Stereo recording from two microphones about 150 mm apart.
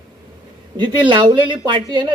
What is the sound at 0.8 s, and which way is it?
Speech, 30° right (ahead or behind).